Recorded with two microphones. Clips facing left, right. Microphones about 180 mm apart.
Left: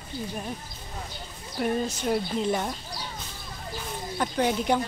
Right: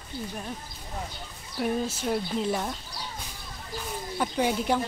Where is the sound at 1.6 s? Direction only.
5° right (ahead or behind).